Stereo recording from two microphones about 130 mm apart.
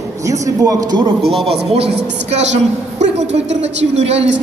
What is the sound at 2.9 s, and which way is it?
A woman's voice, 60° right (ahead or behind).